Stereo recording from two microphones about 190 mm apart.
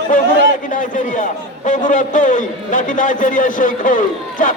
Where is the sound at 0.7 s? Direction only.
45° left (ahead or behind).